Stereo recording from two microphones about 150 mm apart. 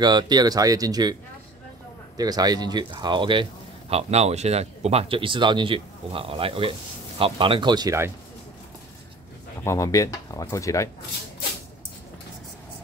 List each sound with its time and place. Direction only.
0.0 s speech: 30° right (ahead or behind)
2.1 s speech: 25° right (ahead or behind)
3.9 s speech: 45° right (ahead or behind); by 8.1 s 25° right (ahead or behind)
9.7 s speech: 20° left (ahead or behind)